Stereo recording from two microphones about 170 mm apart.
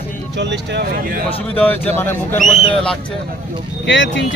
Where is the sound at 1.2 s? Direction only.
10° left (ahead or behind).